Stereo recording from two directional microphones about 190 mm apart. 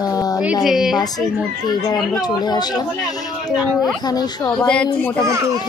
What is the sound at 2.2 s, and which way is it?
Speech, 20° left (ahead or behind).